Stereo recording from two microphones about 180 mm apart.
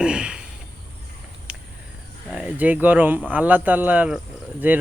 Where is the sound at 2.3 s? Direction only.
5° right (ahead or behind).